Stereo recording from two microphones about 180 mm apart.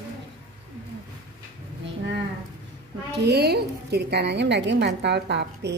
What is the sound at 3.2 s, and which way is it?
A woman's voice, 60° right (ahead or behind).